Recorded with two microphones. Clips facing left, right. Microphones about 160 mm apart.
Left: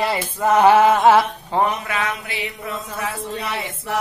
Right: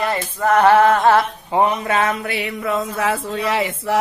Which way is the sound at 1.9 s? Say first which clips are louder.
Right 6 dB; 45° right (ahead or behind).